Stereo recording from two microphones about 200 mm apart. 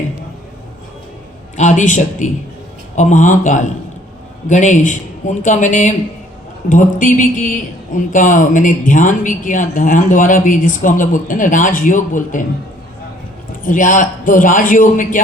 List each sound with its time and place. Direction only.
1.5 s a man's voice: 40° left (ahead or behind)
13.7 s a man's voice: 40° left (ahead or behind)